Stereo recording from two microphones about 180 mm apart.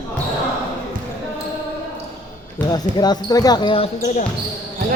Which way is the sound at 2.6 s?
20° left (ahead or behind).